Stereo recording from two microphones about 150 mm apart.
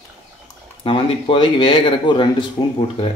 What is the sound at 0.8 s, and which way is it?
A man's voice, 35° left (ahead or behind).